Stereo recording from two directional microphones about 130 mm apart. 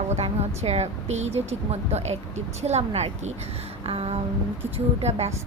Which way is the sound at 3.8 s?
50° right (ahead or behind).